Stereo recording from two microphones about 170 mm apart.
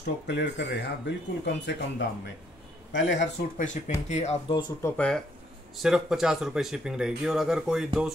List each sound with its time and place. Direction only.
0.0 s speech: 85° left
3.5 s speech: 45° left (ahead or behind)
4.8 s speech: 5° left (ahead or behind)